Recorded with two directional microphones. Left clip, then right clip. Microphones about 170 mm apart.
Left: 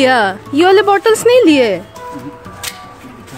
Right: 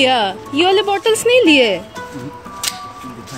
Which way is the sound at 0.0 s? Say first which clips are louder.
Left 3 dB; 30° left (ahead or behind).